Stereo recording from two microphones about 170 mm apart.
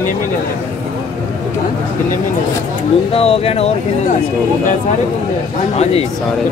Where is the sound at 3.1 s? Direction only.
35° left (ahead or behind).